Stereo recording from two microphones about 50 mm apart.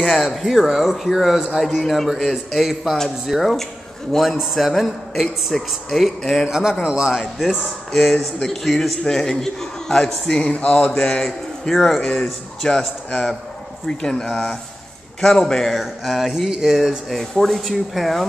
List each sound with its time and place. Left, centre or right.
0.0 s speech: centre
2.1 s speech: centre
2.6 s speech: centre
6.5 s a man's voice: centre
7.2 s a man's voice: centre
10.9 s a man's voice: centre